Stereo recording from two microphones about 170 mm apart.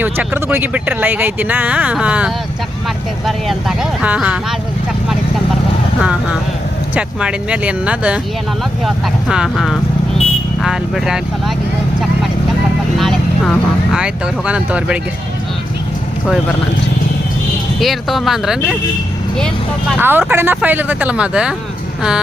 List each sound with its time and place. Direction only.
0.0 s speech: 15° right (ahead or behind)
6.0 s speech: 5° right (ahead or behind)
9.3 s speech: 5° right (ahead or behind)
13.0 s speech: centre (ahead or behind)
17.7 s speech: centre (ahead or behind)
20.0 s speech: 10° right (ahead or behind)